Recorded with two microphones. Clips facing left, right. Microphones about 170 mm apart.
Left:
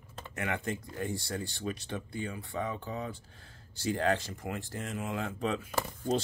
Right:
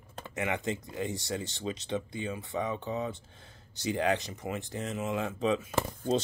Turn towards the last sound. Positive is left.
turn(degrees=-20)  # may be behind; listen again after turning